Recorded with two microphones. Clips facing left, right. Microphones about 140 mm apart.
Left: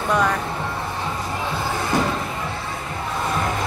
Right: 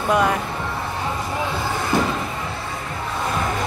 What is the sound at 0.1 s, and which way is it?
Speech, 10° right (ahead or behind).